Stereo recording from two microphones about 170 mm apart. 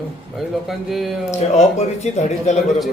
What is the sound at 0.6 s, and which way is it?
Speech, centre (ahead or behind).